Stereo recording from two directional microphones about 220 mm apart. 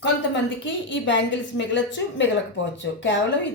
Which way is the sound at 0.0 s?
55° left (ahead or behind).